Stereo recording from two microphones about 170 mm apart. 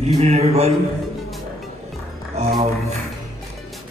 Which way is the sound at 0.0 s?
40° right (ahead or behind).